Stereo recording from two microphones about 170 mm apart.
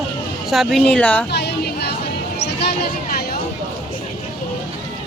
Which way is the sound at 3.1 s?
65° left (ahead or behind).